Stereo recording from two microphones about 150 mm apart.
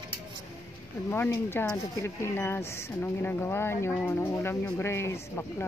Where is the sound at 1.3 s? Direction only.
15° left (ahead or behind).